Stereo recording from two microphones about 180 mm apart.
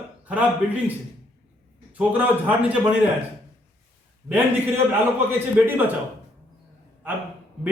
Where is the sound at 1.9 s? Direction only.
10° right (ahead or behind).